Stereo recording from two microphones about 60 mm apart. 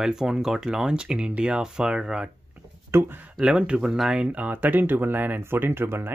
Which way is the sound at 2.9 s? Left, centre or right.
Right.